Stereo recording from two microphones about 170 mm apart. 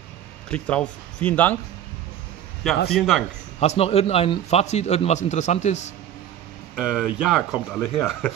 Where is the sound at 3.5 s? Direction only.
40° left (ahead or behind).